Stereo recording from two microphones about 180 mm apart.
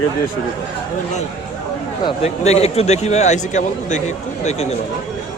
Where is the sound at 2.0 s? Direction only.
35° left (ahead or behind).